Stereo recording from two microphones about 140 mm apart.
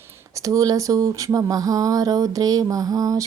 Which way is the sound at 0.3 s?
25° right (ahead or behind).